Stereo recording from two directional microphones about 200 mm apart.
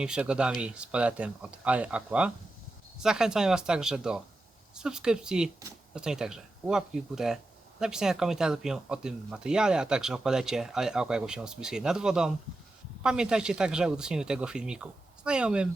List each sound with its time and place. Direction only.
0.0 s speech: 5° right (ahead or behind)